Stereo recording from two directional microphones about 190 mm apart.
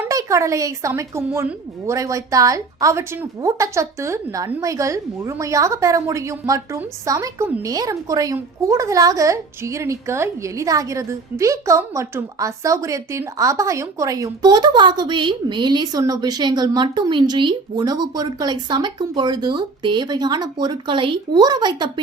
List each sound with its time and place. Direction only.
0.0 s a woman's voice: 15° right (ahead or behind)